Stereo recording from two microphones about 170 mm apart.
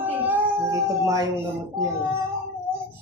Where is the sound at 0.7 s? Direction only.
20° right (ahead or behind).